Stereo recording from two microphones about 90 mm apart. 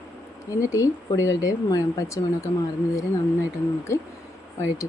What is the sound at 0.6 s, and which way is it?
Speech, 35° left (ahead or behind).